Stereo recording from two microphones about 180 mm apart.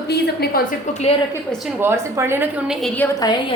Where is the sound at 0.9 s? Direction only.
40° left (ahead or behind).